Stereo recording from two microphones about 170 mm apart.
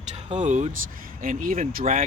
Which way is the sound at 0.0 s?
40° right (ahead or behind).